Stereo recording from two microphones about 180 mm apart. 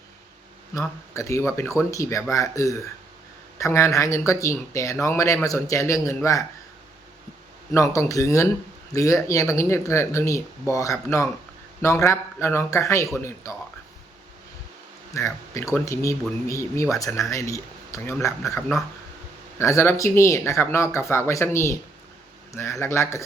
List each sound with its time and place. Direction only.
0.7 s speech: 15° left (ahead or behind)
7.7 s speech: 15° left (ahead or behind)
15.1 s speech: 15° left (ahead or behind)